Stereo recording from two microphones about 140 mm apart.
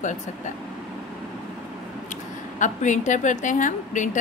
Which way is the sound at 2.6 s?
60° left (ahead or behind).